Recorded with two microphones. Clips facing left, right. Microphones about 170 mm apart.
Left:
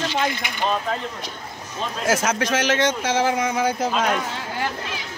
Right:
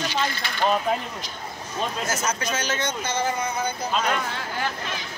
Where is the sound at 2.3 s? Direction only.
90° left.